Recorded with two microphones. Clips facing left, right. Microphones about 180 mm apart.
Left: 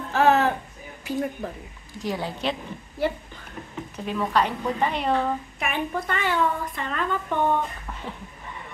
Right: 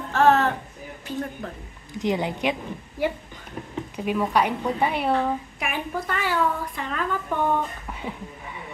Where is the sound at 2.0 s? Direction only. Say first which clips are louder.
Right 4 dB; 20° right (ahead or behind).